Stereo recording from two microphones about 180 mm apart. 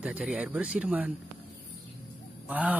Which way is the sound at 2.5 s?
10° right (ahead or behind).